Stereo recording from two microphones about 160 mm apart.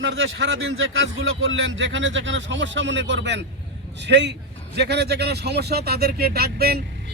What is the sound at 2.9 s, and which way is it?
A man's voice, 90° right.